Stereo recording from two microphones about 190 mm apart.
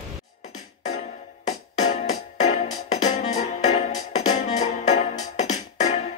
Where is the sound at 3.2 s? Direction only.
35° left (ahead or behind).